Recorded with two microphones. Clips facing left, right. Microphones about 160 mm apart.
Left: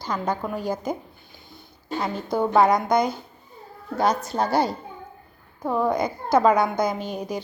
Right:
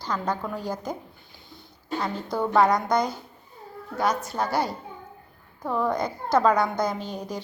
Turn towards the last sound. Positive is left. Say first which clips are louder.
# left 3 dB
turn(degrees=15)  # may be behind; listen again after turning